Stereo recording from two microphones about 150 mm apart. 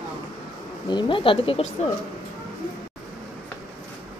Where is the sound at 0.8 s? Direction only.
30° left (ahead or behind).